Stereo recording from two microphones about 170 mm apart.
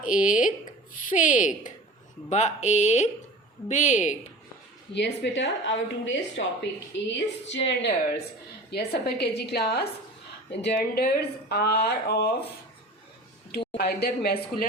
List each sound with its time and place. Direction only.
0.0 s speech: 50° left (ahead or behind)
4.9 s a woman's voice: 85° left
6.4 s speech: 75° left (ahead or behind)
6.9 s a woman's voice: 90° left
8.7 s speech: 70° left (ahead or behind)
10.5 s speech: 85° left
13.7 s speech: 65° left (ahead or behind)